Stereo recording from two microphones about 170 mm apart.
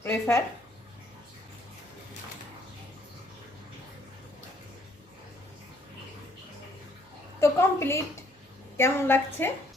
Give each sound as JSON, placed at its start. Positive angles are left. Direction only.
{"t": 0.0, "sound": "a woman's voice", "side_deg": 15}
{"t": 7.3, "sound": "a sound", "side_deg": 15}
{"t": 8.8, "sound": "a woman's voice", "side_deg": 15}